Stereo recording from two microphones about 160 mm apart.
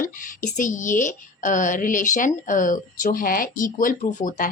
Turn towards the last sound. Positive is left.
turn(degrees=55)  # may be behind; listen again after turning